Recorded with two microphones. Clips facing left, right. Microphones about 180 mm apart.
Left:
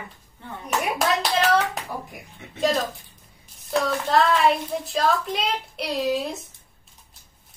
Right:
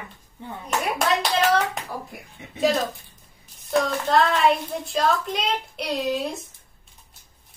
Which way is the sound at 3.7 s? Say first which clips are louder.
Right 1 dB; centre (ahead or behind).